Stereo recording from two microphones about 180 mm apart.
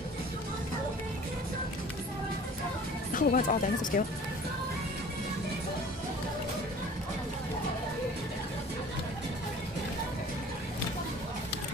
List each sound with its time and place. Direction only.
3.1 s speech: 50° left (ahead or behind)